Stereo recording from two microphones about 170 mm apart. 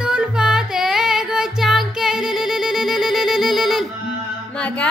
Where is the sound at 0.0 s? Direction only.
5° right (ahead or behind).